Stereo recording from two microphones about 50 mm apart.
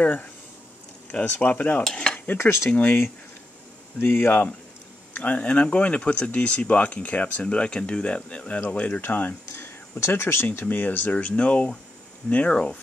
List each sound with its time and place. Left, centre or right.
0.0 s speech: left
2.3 s speech: left
2.7 s speech: left
4.0 s speech: left
5.1 s speech: left
9.9 s speech: left
10.7 s speech: left